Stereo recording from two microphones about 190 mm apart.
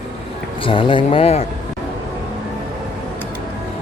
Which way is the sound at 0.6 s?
25° left (ahead or behind).